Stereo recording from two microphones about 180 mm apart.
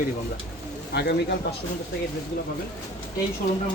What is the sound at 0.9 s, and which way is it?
Speech, 65° left (ahead or behind).